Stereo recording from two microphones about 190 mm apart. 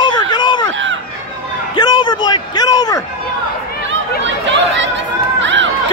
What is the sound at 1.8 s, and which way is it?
A man's voice, 20° left (ahead or behind).